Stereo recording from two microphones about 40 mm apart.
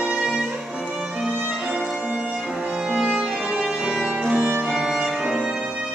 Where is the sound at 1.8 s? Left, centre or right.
Centre.